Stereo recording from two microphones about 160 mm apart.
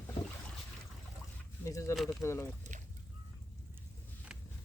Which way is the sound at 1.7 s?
20° left (ahead or behind).